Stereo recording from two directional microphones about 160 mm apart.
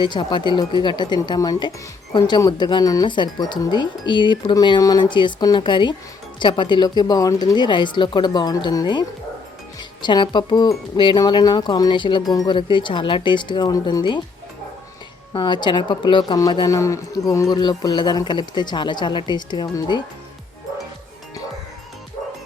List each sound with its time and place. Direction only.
0.0 s speech: 30° left (ahead or behind)
15.3 s speech: 30° left (ahead or behind)